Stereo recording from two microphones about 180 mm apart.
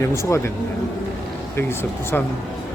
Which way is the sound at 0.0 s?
15° left (ahead or behind).